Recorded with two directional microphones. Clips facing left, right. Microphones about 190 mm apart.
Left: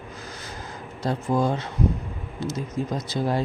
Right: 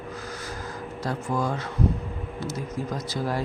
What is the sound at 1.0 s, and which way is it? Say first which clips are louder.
Speech: left 4 dB; 25° left (ahead or behind).